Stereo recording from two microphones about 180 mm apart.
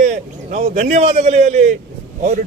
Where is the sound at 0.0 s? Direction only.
40° right (ahead or behind).